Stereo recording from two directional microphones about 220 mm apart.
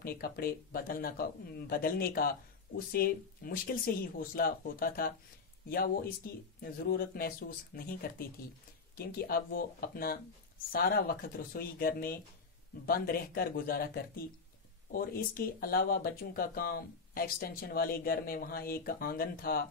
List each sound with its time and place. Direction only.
0.0 s speech: 40° left (ahead or behind)